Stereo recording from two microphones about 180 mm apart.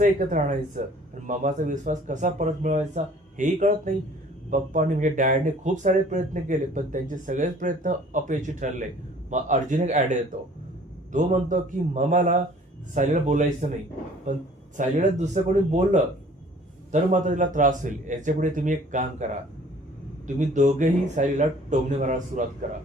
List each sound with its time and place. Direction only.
0.0 s speech: 45° right (ahead or behind)
14.8 s speech: 40° right (ahead or behind)
20.2 s speech: 45° right (ahead or behind)